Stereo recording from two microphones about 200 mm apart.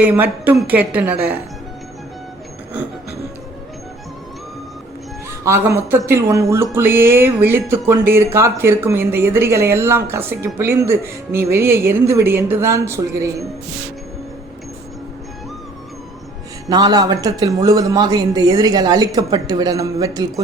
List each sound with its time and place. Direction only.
0.0 s speech: 10° right (ahead or behind)
5.5 s speech: 10° right (ahead or behind)
16.6 s a woman's voice: 20° right (ahead or behind)